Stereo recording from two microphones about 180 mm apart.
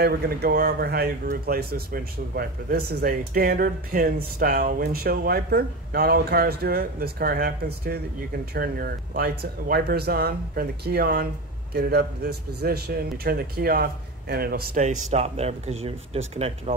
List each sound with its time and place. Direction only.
0.0 s speech: 60° right (ahead or behind)
14.8 s speech: 40° right (ahead or behind)